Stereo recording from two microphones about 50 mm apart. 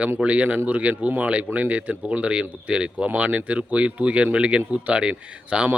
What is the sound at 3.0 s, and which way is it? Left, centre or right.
Speech, right.